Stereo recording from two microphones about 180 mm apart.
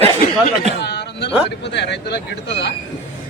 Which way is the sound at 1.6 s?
70° left (ahead or behind).